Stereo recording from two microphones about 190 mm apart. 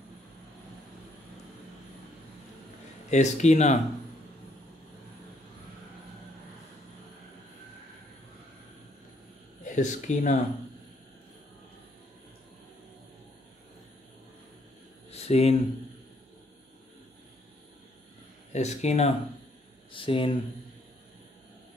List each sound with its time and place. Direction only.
3.1 s speech: 35° left (ahead or behind)
9.7 s speech: 40° left (ahead or behind)
15.0 s a sound: 35° left (ahead or behind)
18.5 s speech: 35° left (ahead or behind)